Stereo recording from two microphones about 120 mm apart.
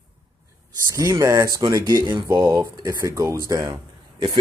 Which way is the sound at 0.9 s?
25° right (ahead or behind).